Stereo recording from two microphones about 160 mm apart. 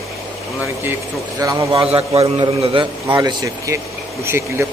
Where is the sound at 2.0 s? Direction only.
35° right (ahead or behind); by 4.7 s 15° right (ahead or behind).